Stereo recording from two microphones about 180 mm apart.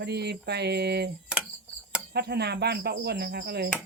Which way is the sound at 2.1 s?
65° right (ahead or behind).